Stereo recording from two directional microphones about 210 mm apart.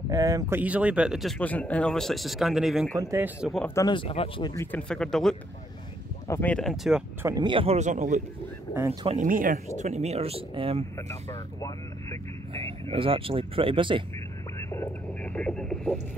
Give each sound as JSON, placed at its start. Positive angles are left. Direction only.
{"t": 0.1, "sound": "speech", "side_deg": -15}
{"t": 3.6, "sound": "speech", "side_deg": 15}
{"t": 4.6, "sound": "speech", "side_deg": 5}
{"t": 7.2, "sound": "speech", "side_deg": -20}
{"t": 11.2, "sound": "speech", "side_deg": 15}
{"t": 12.9, "sound": "speech", "side_deg": -25}
{"t": 14.7, "sound": "radio", "side_deg": 10}